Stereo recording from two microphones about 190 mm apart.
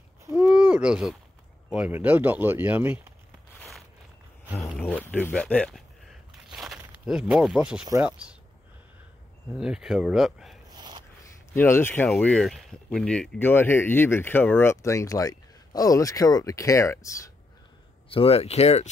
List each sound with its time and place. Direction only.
0.4 s a sound: 5° right (ahead or behind)
1.7 s speech: 5° right (ahead or behind)
4.7 s a sound: 10° left (ahead or behind)
9.5 s speech: 5° right (ahead or behind)
10.7 s snort: 25° right (ahead or behind)
11.5 s speech: 10° left (ahead or behind)
18.1 s speech: 30° left (ahead or behind)